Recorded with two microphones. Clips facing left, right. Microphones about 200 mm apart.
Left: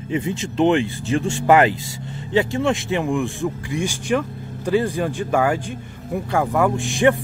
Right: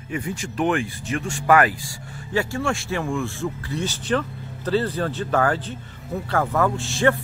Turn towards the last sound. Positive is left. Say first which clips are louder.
# left 3 dB
turn(degrees=15)  # may be behind; listen again after turning